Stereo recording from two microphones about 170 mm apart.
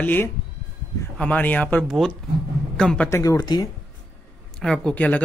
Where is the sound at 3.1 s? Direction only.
20° left (ahead or behind).